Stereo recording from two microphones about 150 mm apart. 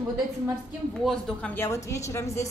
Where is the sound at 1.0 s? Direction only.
5° left (ahead or behind).